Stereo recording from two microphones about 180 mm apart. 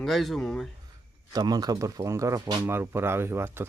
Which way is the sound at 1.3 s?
20° right (ahead or behind).